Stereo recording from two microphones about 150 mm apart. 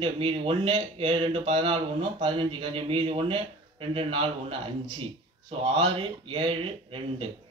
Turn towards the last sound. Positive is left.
turn(degrees=-35)  # may be behind; listen again after turning